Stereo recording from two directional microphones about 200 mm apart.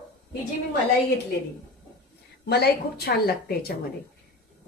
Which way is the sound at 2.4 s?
55° left (ahead or behind).